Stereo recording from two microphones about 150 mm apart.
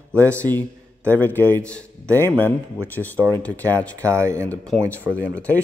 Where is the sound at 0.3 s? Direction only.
10° left (ahead or behind).